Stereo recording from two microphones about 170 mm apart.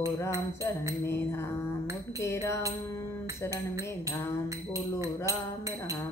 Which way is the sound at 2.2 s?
15° left (ahead or behind).